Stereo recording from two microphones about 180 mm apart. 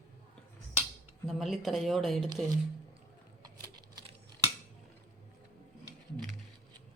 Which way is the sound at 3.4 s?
25° right (ahead or behind).